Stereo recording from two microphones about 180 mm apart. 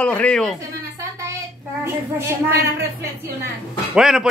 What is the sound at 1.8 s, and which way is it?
A man's voice, 15° right (ahead or behind).